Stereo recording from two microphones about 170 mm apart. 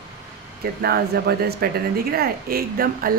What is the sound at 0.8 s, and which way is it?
Speech, 65° right (ahead or behind).